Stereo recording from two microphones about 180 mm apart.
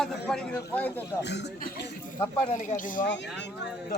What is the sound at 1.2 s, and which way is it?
Speech, 70° left (ahead or behind).